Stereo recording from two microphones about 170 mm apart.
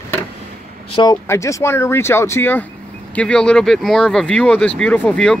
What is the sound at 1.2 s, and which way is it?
Speech, 15° left (ahead or behind).